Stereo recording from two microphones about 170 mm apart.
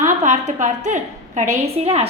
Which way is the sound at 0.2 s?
45° right (ahead or behind).